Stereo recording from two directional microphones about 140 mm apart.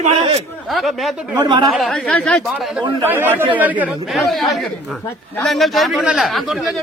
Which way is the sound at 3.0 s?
15° right (ahead or behind).